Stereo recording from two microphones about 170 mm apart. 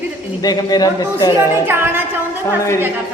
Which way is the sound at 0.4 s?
20° left (ahead or behind).